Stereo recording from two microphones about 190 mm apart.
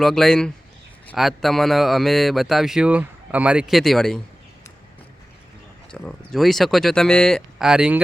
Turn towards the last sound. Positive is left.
turn(degrees=-5)  # may be behind; listen again after turning